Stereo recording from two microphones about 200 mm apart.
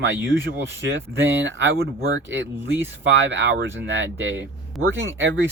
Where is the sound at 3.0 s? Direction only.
65° right (ahead or behind).